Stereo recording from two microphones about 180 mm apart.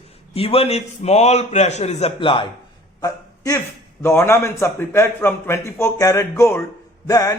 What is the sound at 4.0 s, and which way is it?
A man's voice, 15° left (ahead or behind).